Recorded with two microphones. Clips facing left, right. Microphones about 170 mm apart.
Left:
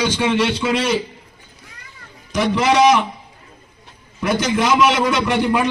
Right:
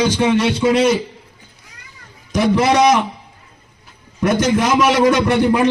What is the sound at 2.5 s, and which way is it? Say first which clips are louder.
Speech: even; 40° right (ahead or behind).